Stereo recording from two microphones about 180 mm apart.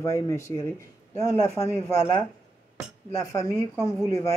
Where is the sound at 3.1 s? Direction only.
20° left (ahead or behind).